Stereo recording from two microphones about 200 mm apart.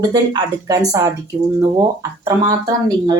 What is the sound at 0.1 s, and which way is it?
Speech, 20° right (ahead or behind).